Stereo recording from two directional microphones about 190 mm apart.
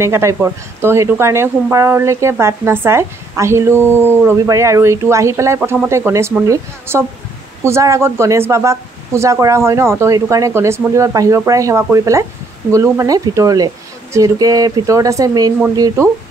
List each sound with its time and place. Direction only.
0.0 s speech: 15° right (ahead or behind)